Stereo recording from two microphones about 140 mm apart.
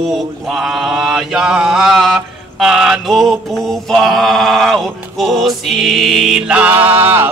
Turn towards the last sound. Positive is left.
turn(degrees=-15)  # may be behind; listen again after turning